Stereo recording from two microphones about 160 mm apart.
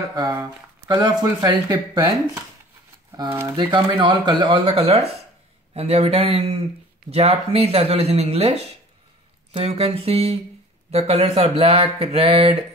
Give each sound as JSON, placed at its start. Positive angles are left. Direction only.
{"t": 0.1, "sound": "speech", "side_deg": -25}